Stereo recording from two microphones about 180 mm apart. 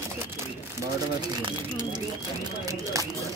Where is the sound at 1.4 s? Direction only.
25° right (ahead or behind).